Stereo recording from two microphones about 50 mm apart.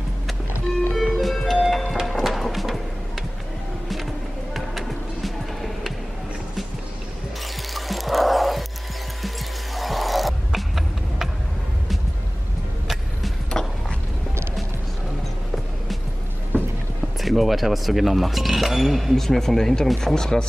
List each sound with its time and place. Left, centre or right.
0.9 s music: centre
4.6 s music: centre
7.7 s music: centre
9.8 s music: centre
12.8 s music: centre
13.5 s a sound: centre
16.5 s rowboat: left
17.2 s speech: centre